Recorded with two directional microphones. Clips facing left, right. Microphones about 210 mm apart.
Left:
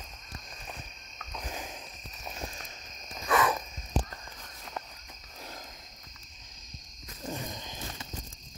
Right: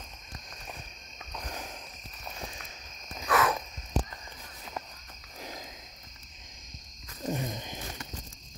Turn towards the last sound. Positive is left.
turn(degrees=-20)  # may be behind; listen again after turning